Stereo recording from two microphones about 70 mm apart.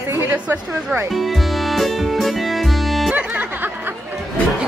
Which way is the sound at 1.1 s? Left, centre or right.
Centre.